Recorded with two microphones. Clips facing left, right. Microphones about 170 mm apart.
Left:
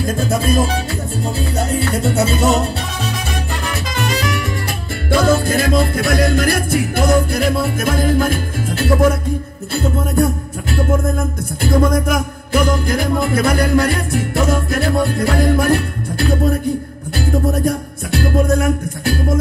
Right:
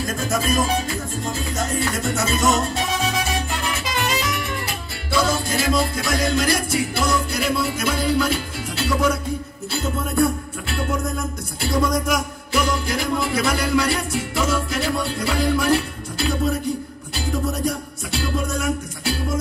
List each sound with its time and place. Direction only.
0.0 s music: 30° left (ahead or behind)
5.1 s music: 55° left (ahead or behind)